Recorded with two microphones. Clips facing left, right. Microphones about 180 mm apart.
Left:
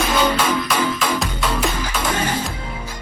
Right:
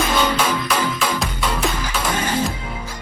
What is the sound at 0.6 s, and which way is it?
Music, 10° left (ahead or behind).